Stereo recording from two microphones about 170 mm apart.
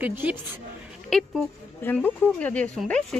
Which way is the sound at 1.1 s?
5° left (ahead or behind).